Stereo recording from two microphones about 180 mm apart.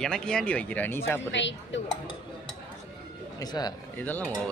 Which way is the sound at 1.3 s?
90° left.